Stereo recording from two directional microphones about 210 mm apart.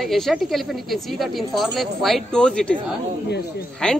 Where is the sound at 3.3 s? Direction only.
50° left (ahead or behind).